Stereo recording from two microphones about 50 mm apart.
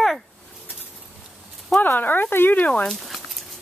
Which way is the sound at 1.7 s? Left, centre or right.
Left.